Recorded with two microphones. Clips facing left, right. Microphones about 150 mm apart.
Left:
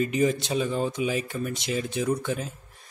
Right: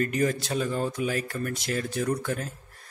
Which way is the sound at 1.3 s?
Centre (ahead or behind).